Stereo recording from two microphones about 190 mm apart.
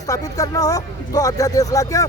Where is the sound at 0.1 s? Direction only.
20° left (ahead or behind).